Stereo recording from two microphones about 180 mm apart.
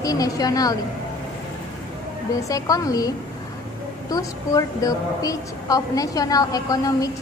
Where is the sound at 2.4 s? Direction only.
20° left (ahead or behind).